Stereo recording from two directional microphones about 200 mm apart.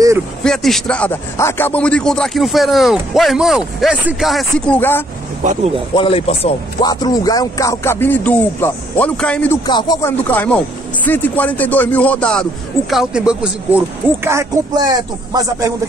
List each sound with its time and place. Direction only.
0.4 s a man's voice: centre (ahead or behind)
5.4 s speech: 35° right (ahead or behind)
5.9 s speech: 30° left (ahead or behind); by 9.6 s 5° left (ahead or behind)
9.7 s speech: 20° left (ahead or behind)
10.2 s speech: 10° left (ahead or behind); by 15.7 s 20° right (ahead or behind)